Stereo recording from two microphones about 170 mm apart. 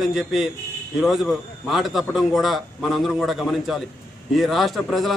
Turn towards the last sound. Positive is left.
turn(degrees=0)  # may be behind; listen again after turning